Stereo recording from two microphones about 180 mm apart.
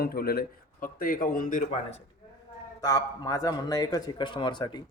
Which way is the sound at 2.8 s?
20° left (ahead or behind).